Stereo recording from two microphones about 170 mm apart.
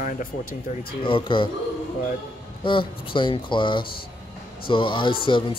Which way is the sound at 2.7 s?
30° left (ahead or behind).